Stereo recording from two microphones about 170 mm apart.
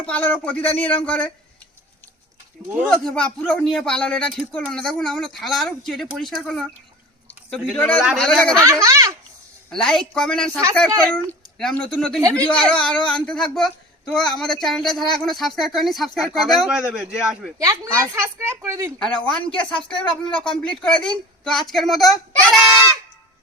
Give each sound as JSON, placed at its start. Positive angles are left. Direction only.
{"t": 0.0, "sound": "speech", "side_deg": 10}
{"t": 2.7, "sound": "speech", "side_deg": 0}
{"t": 8.6, "sound": "speech", "side_deg": -20}
{"t": 9.6, "sound": "speech", "side_deg": 5}
{"t": 18.0, "sound": "a woman's voice", "side_deg": -15}
{"t": 18.9, "sound": "speech", "side_deg": 5}